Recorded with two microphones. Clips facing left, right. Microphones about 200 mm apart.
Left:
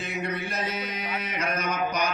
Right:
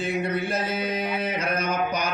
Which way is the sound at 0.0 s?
30° right (ahead or behind).